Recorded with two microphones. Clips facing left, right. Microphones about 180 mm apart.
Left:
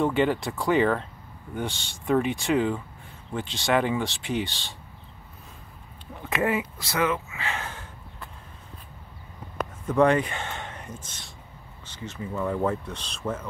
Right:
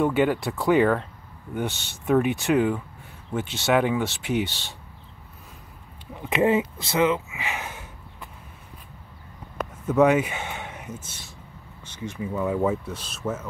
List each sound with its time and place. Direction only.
0.0 s speech: 5° right (ahead or behind)
6.2 s speech: 20° right (ahead or behind)
9.8 s speech: 5° right (ahead or behind)